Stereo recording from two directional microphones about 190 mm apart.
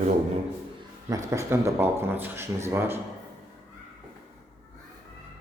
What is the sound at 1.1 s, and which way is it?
Speech, 15° right (ahead or behind).